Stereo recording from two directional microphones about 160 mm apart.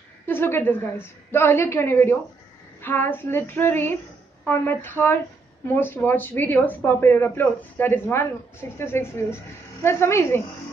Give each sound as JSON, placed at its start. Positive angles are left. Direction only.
{"t": 0.3, "sound": "speech", "side_deg": 15}